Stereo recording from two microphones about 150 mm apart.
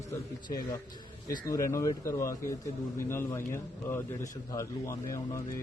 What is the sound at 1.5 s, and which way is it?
A man's voice, 20° left (ahead or behind).